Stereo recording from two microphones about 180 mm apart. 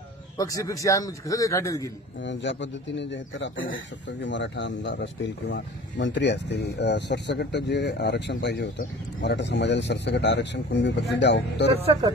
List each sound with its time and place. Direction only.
0.4 s a man's voice: 20° left (ahead or behind)
2.2 s speech: 90° left
11.7 s speech: 30° right (ahead or behind)